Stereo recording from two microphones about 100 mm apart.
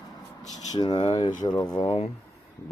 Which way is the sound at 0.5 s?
40° left (ahead or behind).